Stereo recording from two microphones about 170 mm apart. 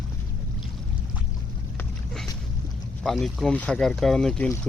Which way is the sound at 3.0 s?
Centre (ahead or behind).